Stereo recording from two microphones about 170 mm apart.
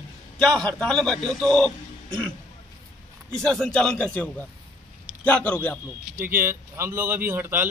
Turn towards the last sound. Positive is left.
turn(degrees=-10)  # may be behind; listen again after turning